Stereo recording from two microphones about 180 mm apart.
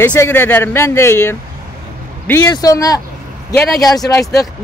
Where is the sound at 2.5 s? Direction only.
20° left (ahead or behind).